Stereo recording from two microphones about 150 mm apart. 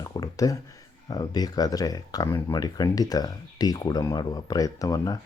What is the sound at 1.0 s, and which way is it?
Speech, 25° left (ahead or behind).